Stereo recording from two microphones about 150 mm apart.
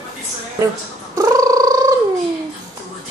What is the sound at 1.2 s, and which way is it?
Purr, 25° right (ahead or behind).